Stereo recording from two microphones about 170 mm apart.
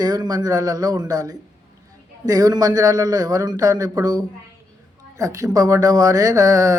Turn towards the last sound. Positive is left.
turn(degrees=-20)  # may be behind; listen again after turning